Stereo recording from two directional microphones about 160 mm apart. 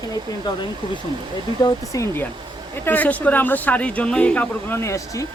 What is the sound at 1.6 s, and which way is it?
Speech, 20° left (ahead or behind).